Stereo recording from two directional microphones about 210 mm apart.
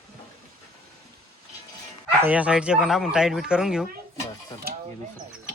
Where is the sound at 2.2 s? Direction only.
5° right (ahead or behind).